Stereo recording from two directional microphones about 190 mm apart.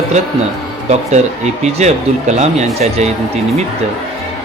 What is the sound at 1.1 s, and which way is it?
Speech, 35° right (ahead or behind).